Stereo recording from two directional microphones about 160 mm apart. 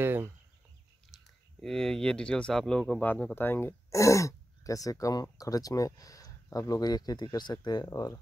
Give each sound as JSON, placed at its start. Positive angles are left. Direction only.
{"t": 0.0, "sound": "speech", "side_deg": -15}
{"t": 1.1, "sound": "speech", "side_deg": 0}